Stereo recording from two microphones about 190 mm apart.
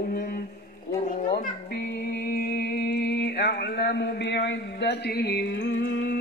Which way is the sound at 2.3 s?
55° left (ahead or behind).